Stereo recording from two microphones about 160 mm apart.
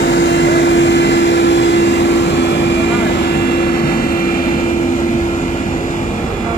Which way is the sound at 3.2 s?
80° left.